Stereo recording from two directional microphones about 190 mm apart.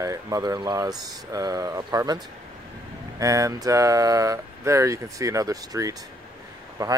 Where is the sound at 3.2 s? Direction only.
15° right (ahead or behind).